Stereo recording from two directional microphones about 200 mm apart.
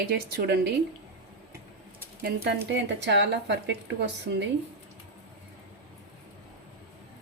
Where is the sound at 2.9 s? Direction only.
60° right (ahead or behind).